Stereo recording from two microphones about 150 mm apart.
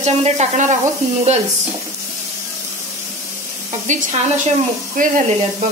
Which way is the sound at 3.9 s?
55° right (ahead or behind).